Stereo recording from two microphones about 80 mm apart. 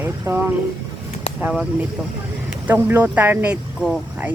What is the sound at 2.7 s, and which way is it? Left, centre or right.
Speech, right.